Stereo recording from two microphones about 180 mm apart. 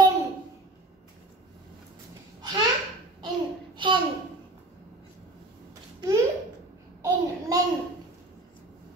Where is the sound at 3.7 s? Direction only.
25° right (ahead or behind).